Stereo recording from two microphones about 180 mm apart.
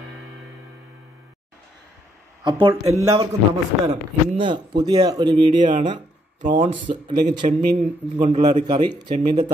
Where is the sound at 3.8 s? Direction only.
35° right (ahead or behind).